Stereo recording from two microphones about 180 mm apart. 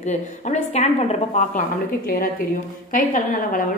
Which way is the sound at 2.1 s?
55° left (ahead or behind).